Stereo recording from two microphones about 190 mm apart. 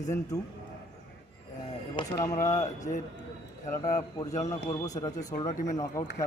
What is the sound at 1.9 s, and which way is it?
A man's voice, 20° left (ahead or behind).